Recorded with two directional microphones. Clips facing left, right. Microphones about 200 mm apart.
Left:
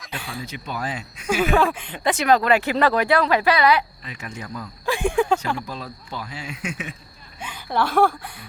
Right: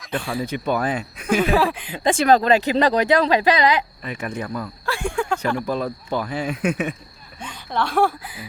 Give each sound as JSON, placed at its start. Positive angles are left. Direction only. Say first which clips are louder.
{"t": 0.2, "sound": "speech", "louder": "right 8 dB", "side_deg": 0}
{"t": 0.4, "sound": "speech", "louder": "right 8 dB", "side_deg": -55}
{"t": 1.4, "sound": "speech", "louder": "left 1 dB", "side_deg": 0}
{"t": 2.0, "sound": "speech", "louder": "right 2 dB", "side_deg": -30}
{"t": 4.0, "sound": "speech", "louder": "right 7 dB", "side_deg": -60}
{"t": 4.9, "sound": "speech", "louder": "left 4 dB", "side_deg": 15}
{"t": 5.6, "sound": "speech", "louder": "right 10 dB", "side_deg": -55}
{"t": 7.3, "sound": "a woman's voice", "louder": "left 1 dB", "side_deg": 5}